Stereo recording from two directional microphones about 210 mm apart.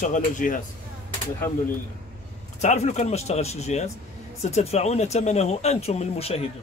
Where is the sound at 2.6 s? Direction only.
35° left (ahead or behind).